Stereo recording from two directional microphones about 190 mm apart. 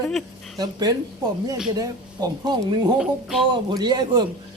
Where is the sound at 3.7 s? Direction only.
20° right (ahead or behind).